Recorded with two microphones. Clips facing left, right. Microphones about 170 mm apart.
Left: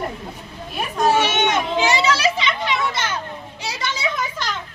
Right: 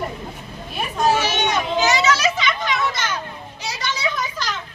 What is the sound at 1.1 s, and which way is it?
Children playing, 25° left (ahead or behind).